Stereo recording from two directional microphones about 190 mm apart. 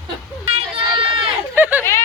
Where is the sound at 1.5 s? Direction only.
10° right (ahead or behind).